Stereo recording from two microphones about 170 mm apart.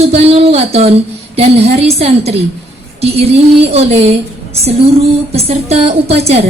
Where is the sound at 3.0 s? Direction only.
35° right (ahead or behind).